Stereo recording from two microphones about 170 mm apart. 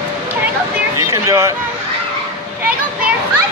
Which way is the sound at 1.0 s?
20° right (ahead or behind).